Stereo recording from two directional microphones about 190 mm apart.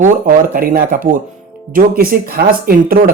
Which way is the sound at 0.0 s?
45° right (ahead or behind).